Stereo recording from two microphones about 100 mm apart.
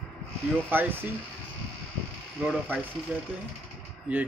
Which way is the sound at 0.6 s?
20° right (ahead or behind).